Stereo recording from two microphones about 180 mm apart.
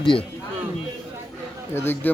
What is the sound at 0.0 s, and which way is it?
Speech, 30° left (ahead or behind).